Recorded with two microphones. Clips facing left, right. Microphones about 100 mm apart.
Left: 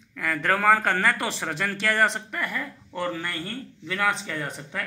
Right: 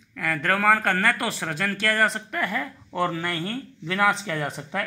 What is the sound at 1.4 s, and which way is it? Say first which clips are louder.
Speech: right 1 dB; 15° left (ahead or behind).